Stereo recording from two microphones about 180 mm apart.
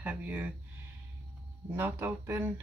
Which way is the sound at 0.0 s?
10° right (ahead or behind).